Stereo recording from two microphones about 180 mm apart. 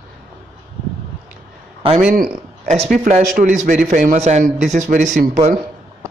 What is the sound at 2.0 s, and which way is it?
A man's voice, 50° right (ahead or behind).